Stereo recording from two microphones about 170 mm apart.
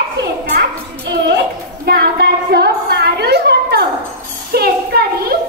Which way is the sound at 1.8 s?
65° right (ahead or behind).